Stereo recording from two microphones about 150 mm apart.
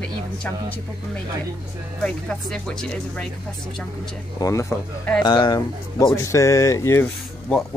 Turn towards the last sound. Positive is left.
turn(degrees=10)  # may be behind; listen again after turning